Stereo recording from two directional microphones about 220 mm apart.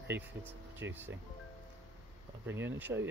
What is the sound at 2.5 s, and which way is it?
Speech, 10° right (ahead or behind).